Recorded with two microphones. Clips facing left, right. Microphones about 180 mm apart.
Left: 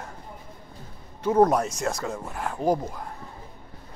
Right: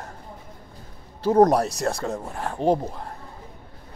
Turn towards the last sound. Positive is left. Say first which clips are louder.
# right 3 dB
turn(degrees=-30)  # may be behind; listen again after turning